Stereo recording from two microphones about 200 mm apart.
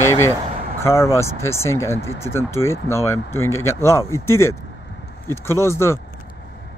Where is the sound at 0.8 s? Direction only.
15° left (ahead or behind).